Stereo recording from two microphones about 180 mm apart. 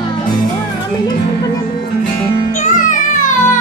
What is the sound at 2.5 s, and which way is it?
Music, 45° left (ahead or behind).